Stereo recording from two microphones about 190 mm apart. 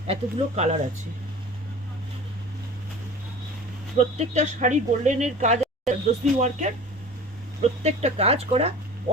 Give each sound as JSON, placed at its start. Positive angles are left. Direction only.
{"t": 0.1, "sound": "speech", "side_deg": -35}
{"t": 3.9, "sound": "speech", "side_deg": -35}